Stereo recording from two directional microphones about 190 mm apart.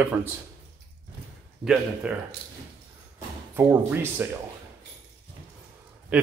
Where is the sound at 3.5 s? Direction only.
10° right (ahead or behind).